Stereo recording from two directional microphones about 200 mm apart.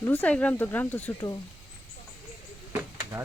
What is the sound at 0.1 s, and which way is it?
Speech, 5° left (ahead or behind).